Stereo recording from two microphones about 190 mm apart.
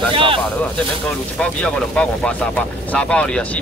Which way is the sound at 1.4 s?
5° left (ahead or behind).